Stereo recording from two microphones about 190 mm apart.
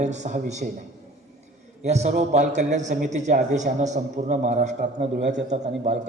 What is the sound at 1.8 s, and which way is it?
A man's voice, 35° right (ahead or behind).